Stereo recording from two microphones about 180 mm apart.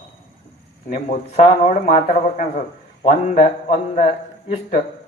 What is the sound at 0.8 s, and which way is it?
Speech, 40° left (ahead or behind).